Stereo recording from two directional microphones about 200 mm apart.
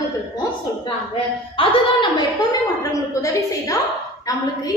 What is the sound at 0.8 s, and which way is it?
A woman's voice, 25° left (ahead or behind).